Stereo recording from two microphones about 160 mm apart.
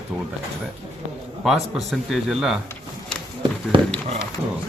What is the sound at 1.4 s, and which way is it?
A man's voice, centre (ahead or behind).